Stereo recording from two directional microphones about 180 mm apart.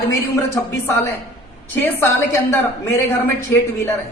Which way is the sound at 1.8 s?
15° left (ahead or behind).